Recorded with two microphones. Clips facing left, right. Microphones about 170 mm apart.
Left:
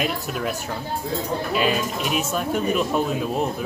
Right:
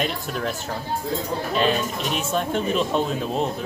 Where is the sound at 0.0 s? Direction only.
5° left (ahead or behind).